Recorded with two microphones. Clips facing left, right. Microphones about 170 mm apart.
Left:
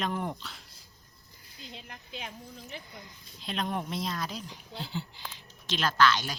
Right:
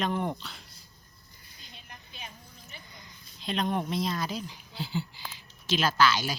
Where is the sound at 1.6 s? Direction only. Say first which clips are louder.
Left 6 dB; 90° left.